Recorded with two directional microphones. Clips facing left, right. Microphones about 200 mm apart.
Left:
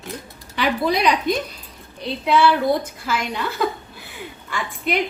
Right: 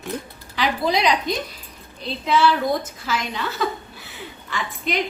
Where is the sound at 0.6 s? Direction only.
55° left (ahead or behind).